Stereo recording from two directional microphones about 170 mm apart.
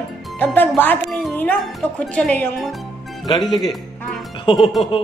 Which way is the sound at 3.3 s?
25° left (ahead or behind).